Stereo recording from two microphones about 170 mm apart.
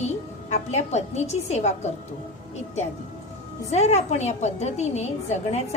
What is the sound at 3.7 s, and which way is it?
A woman's voice, 40° left (ahead or behind).